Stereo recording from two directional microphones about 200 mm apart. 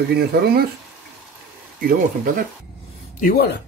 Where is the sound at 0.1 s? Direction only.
55° right (ahead or behind).